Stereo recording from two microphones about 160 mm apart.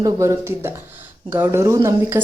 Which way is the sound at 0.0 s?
20° right (ahead or behind).